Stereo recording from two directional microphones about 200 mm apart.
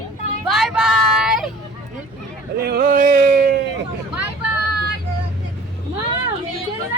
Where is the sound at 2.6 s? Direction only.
50° right (ahead or behind).